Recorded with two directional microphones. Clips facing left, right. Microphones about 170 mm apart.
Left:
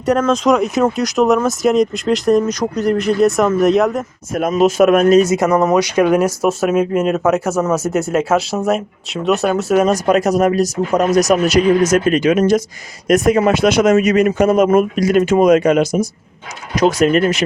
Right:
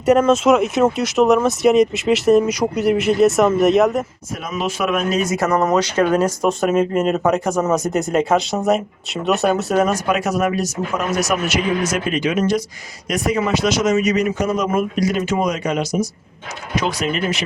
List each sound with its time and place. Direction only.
0.0 s speech: 5° right (ahead or behind)
4.4 s speech: 50° left (ahead or behind)
5.3 s speech: 15° left (ahead or behind)
9.8 s speech: 35° left (ahead or behind)